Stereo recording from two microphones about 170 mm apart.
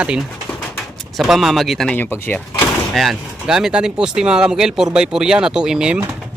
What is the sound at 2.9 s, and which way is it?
Speech, centre (ahead or behind).